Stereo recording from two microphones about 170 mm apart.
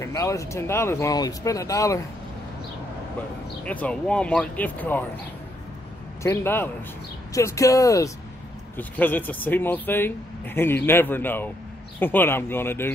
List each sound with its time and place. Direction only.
0.0 s speech: 20° left (ahead or behind)
3.6 s speech: 10° left (ahead or behind)
6.2 s speech: 15° left (ahead or behind)